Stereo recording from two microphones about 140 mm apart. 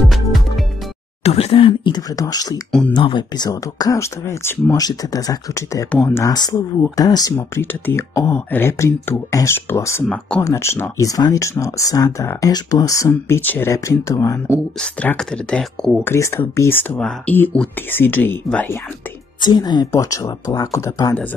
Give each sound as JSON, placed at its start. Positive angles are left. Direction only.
{"t": 0.0, "sound": "music", "side_deg": 0}
{"t": 1.2, "sound": "speech", "side_deg": 45}
{"t": 14.8, "sound": "speech", "side_deg": 5}
{"t": 19.4, "sound": "speech", "side_deg": 30}